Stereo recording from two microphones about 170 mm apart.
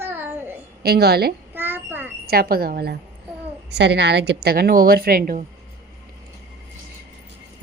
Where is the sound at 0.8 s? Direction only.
70° right (ahead or behind).